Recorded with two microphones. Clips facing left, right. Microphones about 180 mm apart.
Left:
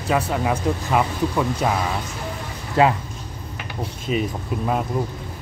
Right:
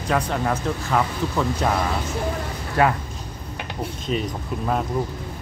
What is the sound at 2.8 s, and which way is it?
Speech, 25° left (ahead or behind).